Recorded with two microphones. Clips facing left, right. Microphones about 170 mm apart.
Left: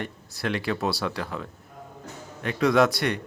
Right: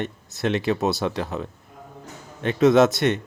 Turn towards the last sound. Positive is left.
turn(degrees=-25)  # may be behind; listen again after turning